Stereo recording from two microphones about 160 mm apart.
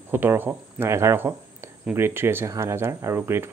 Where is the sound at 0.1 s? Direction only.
15° right (ahead or behind).